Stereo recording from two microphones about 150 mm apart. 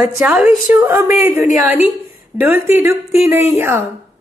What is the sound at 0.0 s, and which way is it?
Speech, 5° right (ahead or behind).